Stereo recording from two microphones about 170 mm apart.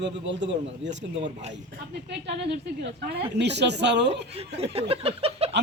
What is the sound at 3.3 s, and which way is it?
Speech, 90° right.